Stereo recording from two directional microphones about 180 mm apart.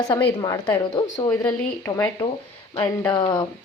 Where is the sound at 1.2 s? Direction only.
10° left (ahead or behind).